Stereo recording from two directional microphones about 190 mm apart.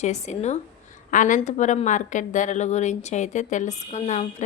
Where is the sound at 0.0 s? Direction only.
40° left (ahead or behind).